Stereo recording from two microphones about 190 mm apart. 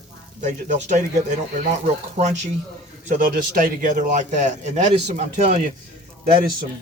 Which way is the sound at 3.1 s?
50° right (ahead or behind).